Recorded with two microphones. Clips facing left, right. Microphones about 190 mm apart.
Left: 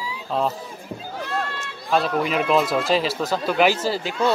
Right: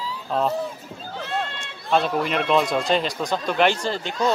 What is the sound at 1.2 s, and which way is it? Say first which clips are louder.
Run: even; 20° right (ahead or behind).